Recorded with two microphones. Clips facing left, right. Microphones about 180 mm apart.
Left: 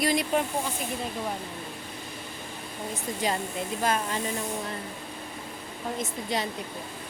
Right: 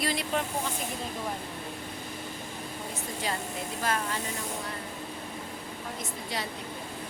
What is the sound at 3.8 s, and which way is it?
Speech, 20° left (ahead or behind).